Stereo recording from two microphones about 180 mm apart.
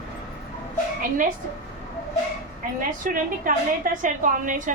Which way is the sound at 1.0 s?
50° right (ahead or behind).